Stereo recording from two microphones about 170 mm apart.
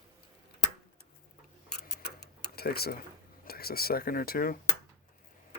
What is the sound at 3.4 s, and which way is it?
Speech, 60° left (ahead or behind).